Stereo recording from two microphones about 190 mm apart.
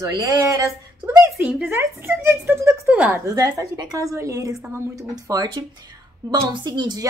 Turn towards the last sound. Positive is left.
turn(degrees=-20)  # may be behind; listen again after turning